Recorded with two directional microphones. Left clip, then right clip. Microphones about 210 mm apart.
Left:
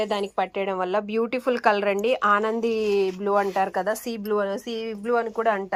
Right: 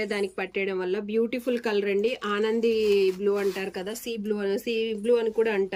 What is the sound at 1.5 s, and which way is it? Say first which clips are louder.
Speech: left 5 dB; 35° left (ahead or behind).